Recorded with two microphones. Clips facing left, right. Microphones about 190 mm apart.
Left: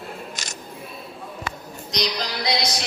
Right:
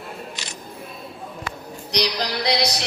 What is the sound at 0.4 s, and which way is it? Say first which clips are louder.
Single-lens reflex camera: even; 45° left (ahead or behind).